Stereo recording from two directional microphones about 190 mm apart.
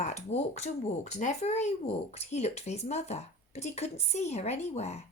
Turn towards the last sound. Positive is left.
turn(degrees=35)  # may be behind; listen again after turning